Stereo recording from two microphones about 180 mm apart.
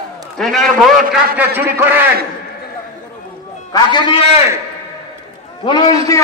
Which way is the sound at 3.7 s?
25° left (ahead or behind).